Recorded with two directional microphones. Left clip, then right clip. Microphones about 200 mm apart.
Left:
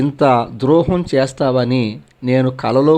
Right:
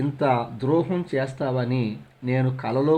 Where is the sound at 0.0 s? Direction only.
30° left (ahead or behind).